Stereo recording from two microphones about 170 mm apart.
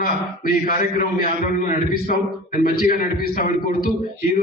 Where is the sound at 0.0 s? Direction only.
55° left (ahead or behind).